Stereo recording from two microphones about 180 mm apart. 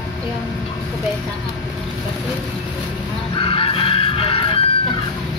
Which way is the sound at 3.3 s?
30° left (ahead or behind).